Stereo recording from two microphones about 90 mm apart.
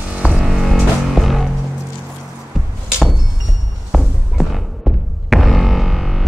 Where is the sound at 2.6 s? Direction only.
Centre (ahead or behind).